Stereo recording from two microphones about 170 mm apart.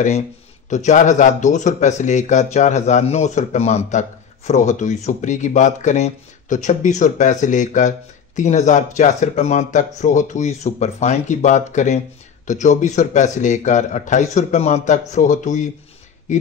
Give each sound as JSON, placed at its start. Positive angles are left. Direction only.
{"t": 0.7, "sound": "speech", "side_deg": 45}